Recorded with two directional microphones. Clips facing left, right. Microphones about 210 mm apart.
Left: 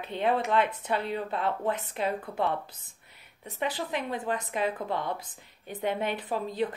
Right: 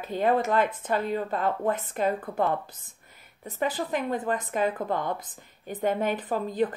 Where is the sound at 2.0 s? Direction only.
45° right (ahead or behind).